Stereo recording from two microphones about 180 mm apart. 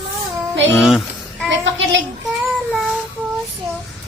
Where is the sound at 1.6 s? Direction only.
90° right.